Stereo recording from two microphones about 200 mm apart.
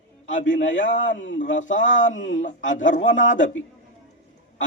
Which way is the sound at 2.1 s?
70° left (ahead or behind).